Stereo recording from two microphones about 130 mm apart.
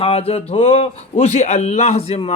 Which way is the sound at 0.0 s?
50° left (ahead or behind).